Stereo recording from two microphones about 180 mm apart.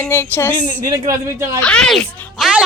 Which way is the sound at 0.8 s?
20° right (ahead or behind).